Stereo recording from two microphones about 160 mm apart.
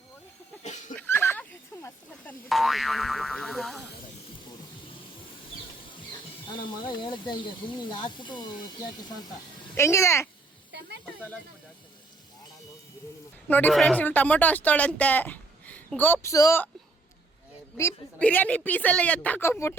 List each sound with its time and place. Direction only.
0.6 s fowl: 50° left (ahead or behind)
0.9 s boing: 15° left (ahead or behind)
6.6 s speech: 30° left (ahead or behind)
9.7 s speech: 15° left (ahead or behind)
10.7 s a sound: 90° right
13.5 s speech: 10° left (ahead or behind)
17.7 s speech: 15° left (ahead or behind)